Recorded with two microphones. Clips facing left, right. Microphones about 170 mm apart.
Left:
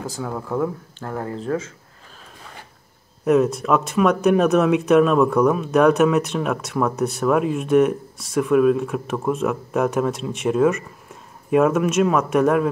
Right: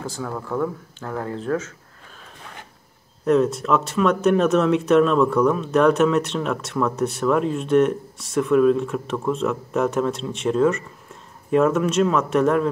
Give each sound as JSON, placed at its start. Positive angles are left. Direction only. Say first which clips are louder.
{"t": 0.0, "sound": "speech", "louder": "left 1 dB", "side_deg": 10}
{"t": 3.3, "sound": "speech", "louder": "left 1 dB", "side_deg": 10}